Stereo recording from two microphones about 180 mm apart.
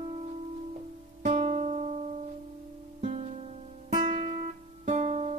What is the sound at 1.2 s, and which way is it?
Music, 40° right (ahead or behind).